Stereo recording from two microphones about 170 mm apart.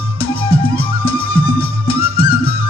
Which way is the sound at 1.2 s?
60° left (ahead or behind).